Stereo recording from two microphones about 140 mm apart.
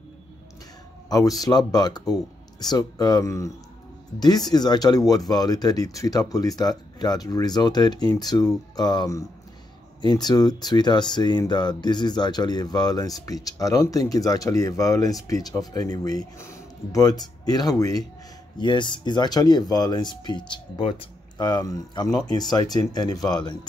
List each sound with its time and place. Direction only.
1.0 s speech: 25° left (ahead or behind)